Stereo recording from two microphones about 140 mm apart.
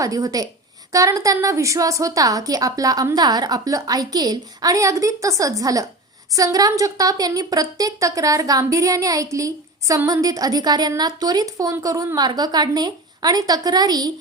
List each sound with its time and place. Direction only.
0.0 s a woman's voice: 25° right (ahead or behind)